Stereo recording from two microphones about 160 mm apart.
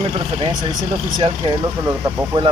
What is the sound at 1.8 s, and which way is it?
Speech, 15° right (ahead or behind).